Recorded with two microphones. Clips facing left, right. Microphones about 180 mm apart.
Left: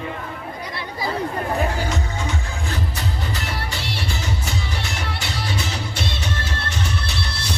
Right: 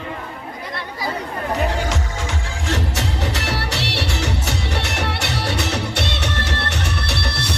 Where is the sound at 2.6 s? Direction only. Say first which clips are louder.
Right 6 dB; 80° right.